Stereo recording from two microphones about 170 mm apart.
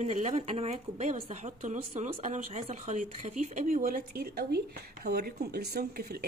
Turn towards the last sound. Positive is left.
turn(degrees=-65)  # may be behind; listen again after turning